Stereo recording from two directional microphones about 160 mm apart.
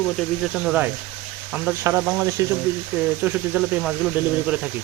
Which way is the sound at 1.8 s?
15° right (ahead or behind).